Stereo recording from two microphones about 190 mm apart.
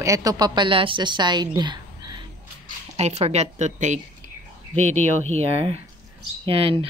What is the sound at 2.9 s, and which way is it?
Speech, 35° right (ahead or behind).